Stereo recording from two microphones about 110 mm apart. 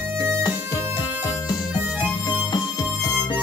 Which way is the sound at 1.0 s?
30° left (ahead or behind).